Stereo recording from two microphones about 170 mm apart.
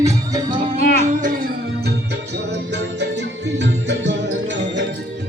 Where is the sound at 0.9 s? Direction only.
40° right (ahead or behind).